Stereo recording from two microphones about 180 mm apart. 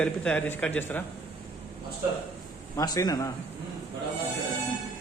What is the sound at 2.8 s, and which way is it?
Speech, 20° left (ahead or behind).